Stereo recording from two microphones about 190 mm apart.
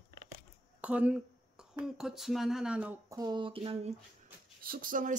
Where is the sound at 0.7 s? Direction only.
5° right (ahead or behind).